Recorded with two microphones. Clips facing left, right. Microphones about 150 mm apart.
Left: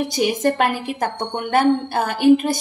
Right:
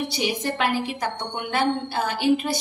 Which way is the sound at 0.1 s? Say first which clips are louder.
Left 7 dB; 50° left (ahead or behind).